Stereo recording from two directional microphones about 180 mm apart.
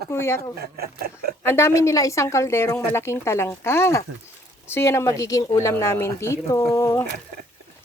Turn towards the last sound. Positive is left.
turn(degrees=15)  # may be behind; listen again after turning